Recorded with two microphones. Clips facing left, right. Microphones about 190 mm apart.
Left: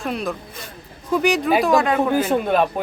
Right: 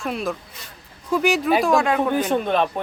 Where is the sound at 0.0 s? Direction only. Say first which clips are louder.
Left 1 dB; centre (ahead or behind).